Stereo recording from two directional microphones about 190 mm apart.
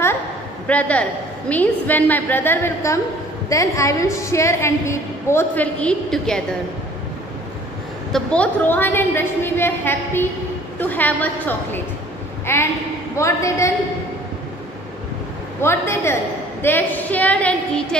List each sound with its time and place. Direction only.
0.7 s a woman's voice: 5° left (ahead or behind)
8.1 s a woman's voice: 5° left (ahead or behind)
15.6 s a woman's voice: 15° left (ahead or behind)